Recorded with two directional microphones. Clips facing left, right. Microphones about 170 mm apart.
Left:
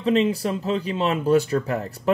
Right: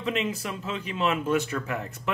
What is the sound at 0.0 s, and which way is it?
Speech, 35° left (ahead or behind).